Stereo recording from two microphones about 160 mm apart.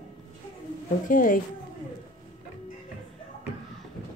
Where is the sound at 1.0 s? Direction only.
60° left (ahead or behind).